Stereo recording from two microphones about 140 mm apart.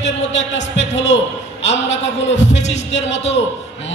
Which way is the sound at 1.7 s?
55° left (ahead or behind).